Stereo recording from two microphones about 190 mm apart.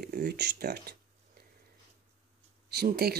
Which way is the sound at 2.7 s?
55° right (ahead or behind).